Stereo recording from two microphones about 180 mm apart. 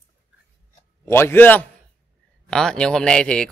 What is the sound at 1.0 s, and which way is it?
A man's voice, 15° left (ahead or behind).